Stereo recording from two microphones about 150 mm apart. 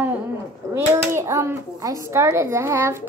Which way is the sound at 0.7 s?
20° right (ahead or behind).